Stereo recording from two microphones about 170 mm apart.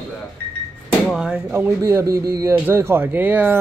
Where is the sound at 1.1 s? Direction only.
5° right (ahead or behind).